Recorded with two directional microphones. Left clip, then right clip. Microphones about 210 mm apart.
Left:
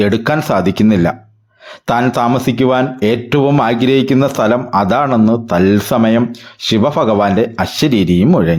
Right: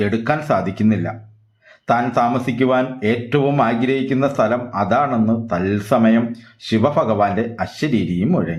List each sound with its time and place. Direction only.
0.0 s speech: 40° left (ahead or behind)